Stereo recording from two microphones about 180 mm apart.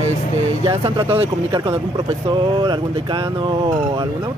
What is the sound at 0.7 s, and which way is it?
Speech, 30° right (ahead or behind).